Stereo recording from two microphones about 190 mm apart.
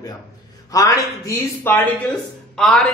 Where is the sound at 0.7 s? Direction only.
15° left (ahead or behind).